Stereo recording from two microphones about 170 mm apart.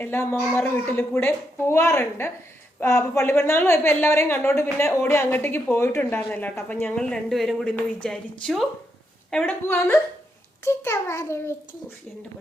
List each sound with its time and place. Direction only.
0.0 s a woman's voice: 15° left (ahead or behind)